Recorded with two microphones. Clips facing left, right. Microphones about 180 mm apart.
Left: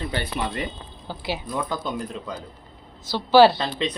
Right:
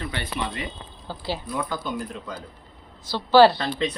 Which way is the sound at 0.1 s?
35° left (ahead or behind).